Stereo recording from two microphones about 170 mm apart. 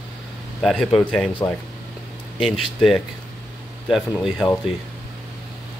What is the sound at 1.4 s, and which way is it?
Speech, 15° left (ahead or behind).